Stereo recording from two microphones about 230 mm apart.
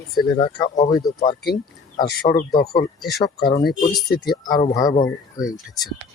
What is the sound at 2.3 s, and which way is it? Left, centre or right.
Speech, left.